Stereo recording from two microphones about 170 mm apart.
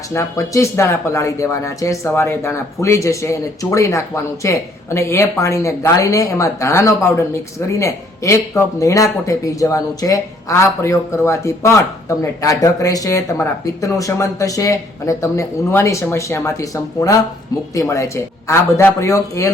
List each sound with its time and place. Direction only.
0.1 s speech: 20° left (ahead or behind)